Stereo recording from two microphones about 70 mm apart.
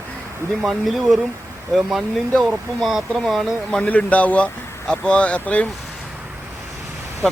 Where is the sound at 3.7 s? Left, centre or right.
Centre.